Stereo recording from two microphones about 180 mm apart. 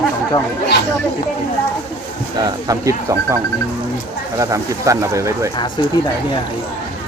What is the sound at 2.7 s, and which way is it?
Speech, 15° right (ahead or behind).